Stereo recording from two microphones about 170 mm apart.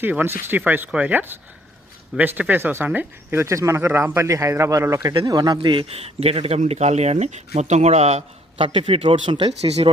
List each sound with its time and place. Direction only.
0.0 s speech: 10° right (ahead or behind); by 9.9 s 35° right (ahead or behind)